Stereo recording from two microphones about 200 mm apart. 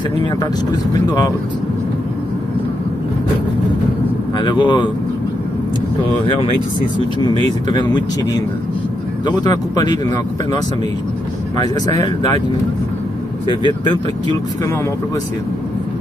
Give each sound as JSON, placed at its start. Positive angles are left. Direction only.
{"t": 0.2, "sound": "speech", "side_deg": 20}
{"t": 4.4, "sound": "speech", "side_deg": 25}
{"t": 7.7, "sound": "speech", "side_deg": 20}
{"t": 11.5, "sound": "speech", "side_deg": 20}